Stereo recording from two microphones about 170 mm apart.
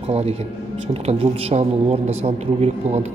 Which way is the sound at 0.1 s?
35° right (ahead or behind).